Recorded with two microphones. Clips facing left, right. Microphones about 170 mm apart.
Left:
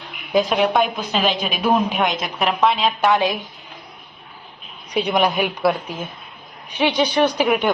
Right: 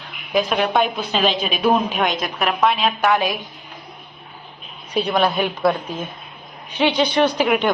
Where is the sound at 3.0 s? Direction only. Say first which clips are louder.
Left 1 dB; 15° left (ahead or behind).